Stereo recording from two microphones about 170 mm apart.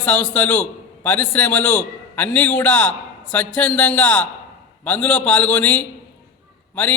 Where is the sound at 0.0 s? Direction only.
10° left (ahead or behind).